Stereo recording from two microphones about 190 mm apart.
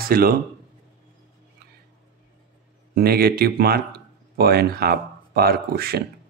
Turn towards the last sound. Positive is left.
turn(degrees=-55)  # may be behind; listen again after turning